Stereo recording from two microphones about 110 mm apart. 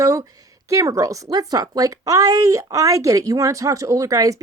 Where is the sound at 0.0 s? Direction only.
30° right (ahead or behind).